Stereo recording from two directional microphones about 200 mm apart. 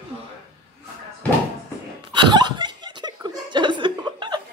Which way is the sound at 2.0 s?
20° right (ahead or behind).